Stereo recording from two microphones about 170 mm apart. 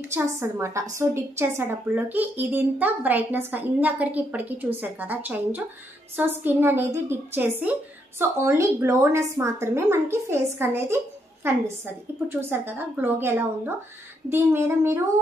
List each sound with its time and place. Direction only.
0.1 s a woman's voice: 15° right (ahead or behind)